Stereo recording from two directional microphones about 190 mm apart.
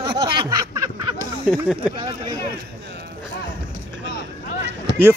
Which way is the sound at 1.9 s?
25° right (ahead or behind).